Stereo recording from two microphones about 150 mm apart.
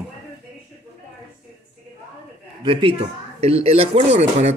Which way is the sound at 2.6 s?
35° right (ahead or behind).